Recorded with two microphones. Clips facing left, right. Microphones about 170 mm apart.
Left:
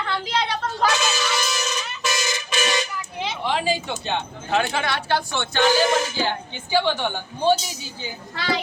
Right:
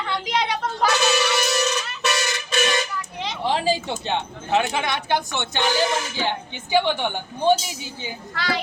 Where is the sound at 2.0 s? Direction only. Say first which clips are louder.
Right 2 dB; 65° right (ahead or behind).